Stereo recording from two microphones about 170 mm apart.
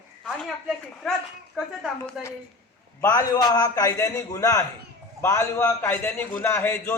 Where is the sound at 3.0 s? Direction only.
20° left (ahead or behind).